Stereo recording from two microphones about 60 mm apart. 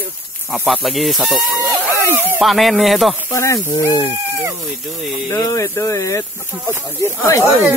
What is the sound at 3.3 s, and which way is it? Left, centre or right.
Speech, left.